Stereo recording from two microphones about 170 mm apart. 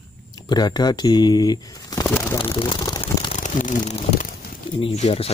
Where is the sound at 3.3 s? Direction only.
50° left (ahead or behind).